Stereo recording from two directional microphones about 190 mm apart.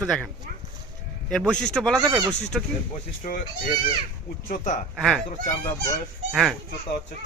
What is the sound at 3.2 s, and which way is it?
Speech, 40° left (ahead or behind).